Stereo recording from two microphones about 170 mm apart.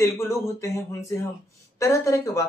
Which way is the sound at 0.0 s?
15° left (ahead or behind).